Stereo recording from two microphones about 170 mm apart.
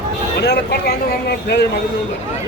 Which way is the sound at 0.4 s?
75° left (ahead or behind).